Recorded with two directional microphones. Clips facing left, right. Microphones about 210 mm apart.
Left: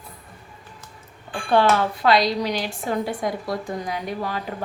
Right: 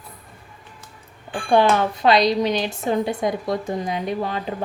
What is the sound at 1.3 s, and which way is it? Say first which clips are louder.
Speech: right 2 dB; 20° right (ahead or behind).